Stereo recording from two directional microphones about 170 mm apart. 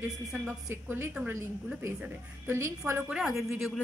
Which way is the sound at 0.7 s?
15° right (ahead or behind).